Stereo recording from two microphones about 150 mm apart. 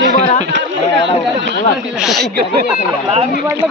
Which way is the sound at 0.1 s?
55° left (ahead or behind).